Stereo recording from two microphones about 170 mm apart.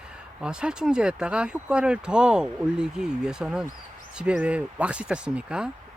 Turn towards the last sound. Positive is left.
turn(degrees=-5)  # may be behind; listen again after turning